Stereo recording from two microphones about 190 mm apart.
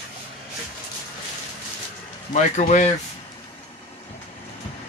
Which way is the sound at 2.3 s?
40° left (ahead or behind).